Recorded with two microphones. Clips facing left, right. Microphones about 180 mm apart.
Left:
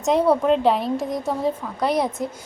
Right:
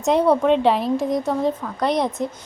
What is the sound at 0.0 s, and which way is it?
A woman's voice, centre (ahead or behind).